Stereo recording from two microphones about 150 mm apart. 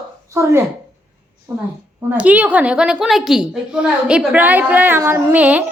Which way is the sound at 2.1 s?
10° right (ahead or behind).